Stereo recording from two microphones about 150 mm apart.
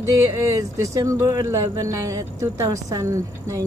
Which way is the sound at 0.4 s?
20° right (ahead or behind).